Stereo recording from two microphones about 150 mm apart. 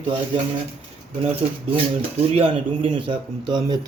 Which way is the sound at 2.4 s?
35° right (ahead or behind).